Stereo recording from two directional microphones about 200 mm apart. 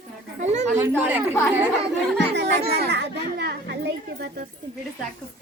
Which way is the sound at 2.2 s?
60° right (ahead or behind).